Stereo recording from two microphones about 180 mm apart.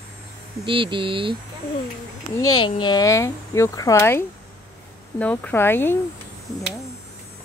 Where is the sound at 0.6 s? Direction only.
30° right (ahead or behind).